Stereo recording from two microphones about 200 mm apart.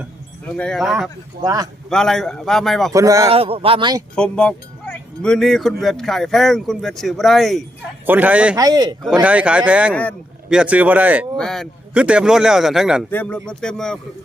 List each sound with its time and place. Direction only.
0.5 s speech: 5° left (ahead or behind)
1.4 s speech: 20° right (ahead or behind)
1.9 s speech: centre (ahead or behind)
2.9 s speech: 15° right (ahead or behind)
3.2 s speech: 30° right (ahead or behind)
4.1 s speech: 5° left (ahead or behind)
8.5 s speech: 20° right (ahead or behind)
9.2 s speech: 5° right (ahead or behind)
9.9 s speech: 5° left (ahead or behind)
10.5 s speech: 5° right (ahead or behind)
13.1 s speech: 10° left (ahead or behind)